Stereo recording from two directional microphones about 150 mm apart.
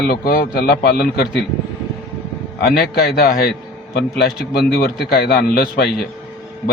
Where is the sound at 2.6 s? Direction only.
90° left.